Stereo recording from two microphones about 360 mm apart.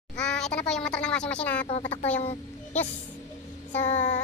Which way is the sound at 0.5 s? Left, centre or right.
Centre.